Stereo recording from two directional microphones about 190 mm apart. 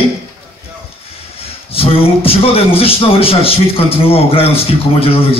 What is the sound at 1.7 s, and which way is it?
A man's voice, 30° left (ahead or behind).